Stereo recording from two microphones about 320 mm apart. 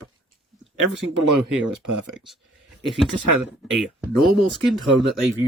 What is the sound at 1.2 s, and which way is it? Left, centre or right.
Speech, right.